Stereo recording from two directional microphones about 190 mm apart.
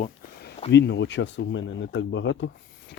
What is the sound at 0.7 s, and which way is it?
Speech, 65° left (ahead or behind).